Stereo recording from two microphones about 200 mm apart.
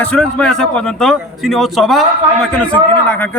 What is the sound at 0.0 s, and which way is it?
A man's voice, 5° left (ahead or behind).